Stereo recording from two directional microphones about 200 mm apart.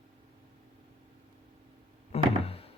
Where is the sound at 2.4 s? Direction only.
30° left (ahead or behind).